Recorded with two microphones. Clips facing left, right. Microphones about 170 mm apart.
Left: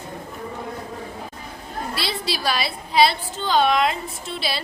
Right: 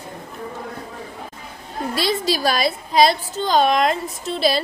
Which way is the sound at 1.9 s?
45° right (ahead or behind).